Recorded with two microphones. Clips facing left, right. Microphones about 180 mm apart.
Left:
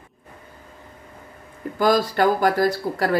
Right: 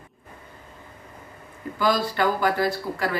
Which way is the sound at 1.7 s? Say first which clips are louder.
Left 4 dB; 45° left (ahead or behind).